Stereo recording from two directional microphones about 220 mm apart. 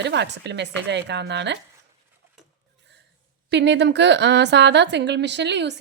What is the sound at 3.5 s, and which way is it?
Speech, 50° right (ahead or behind).